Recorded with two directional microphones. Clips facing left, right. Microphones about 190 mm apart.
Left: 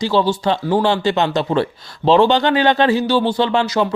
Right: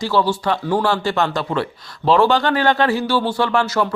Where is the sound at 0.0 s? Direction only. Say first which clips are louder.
Left 2 dB; 20° left (ahead or behind).